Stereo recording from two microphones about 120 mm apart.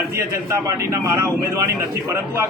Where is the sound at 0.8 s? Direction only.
25° right (ahead or behind).